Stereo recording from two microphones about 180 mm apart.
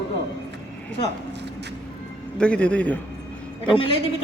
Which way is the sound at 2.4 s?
5° left (ahead or behind).